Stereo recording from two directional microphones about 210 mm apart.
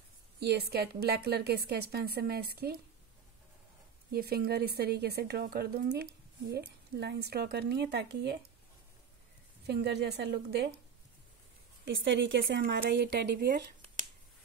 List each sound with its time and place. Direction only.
0.4 s speech: 50° right (ahead or behind)
4.1 s speech: 50° right (ahead or behind)
9.7 s speech: 50° right (ahead or behind)
11.8 s a woman's voice: 60° right (ahead or behind)